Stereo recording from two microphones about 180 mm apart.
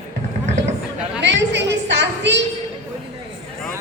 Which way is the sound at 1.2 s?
75° right (ahead or behind).